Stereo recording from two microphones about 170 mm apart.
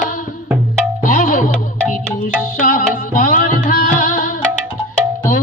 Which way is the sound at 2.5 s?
55° left (ahead or behind).